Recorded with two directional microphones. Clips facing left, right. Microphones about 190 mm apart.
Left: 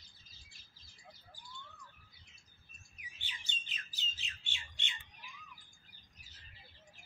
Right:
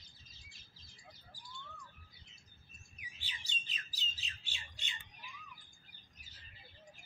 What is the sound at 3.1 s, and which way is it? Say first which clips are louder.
Bird: even; 35° right (ahead or behind).